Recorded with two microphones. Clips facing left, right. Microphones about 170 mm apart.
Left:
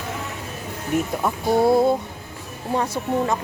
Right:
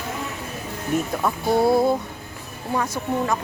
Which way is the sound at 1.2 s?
20° left (ahead or behind).